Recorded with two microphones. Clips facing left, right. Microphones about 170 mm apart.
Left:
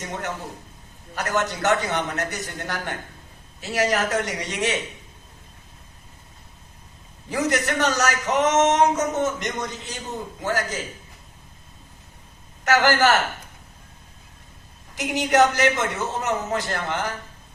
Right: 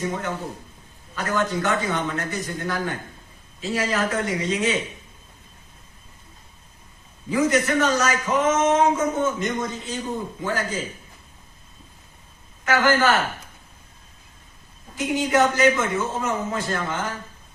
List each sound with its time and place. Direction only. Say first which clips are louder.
1.1 s speech: right 1 dB; 75° left (ahead or behind)
7.3 s speech: right 3 dB; 75° left (ahead or behind)
12.7 s speech: left 1 dB; 75° left (ahead or behind)
14.9 s speech: left 1 dB; 75° left (ahead or behind)